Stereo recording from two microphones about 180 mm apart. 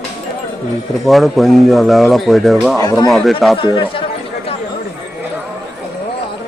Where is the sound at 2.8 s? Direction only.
20° left (ahead or behind).